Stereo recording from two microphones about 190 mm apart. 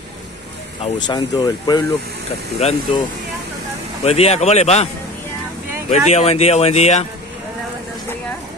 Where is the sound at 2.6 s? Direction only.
30° left (ahead or behind).